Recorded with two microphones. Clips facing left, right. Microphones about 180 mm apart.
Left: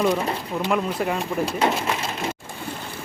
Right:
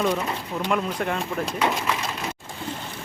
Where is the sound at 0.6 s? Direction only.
5° left (ahead or behind).